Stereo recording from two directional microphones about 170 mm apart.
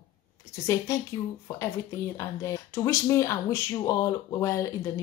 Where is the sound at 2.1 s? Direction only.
20° left (ahead or behind).